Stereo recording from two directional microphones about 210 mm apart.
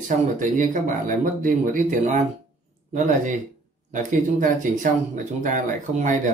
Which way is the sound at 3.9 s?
40° right (ahead or behind).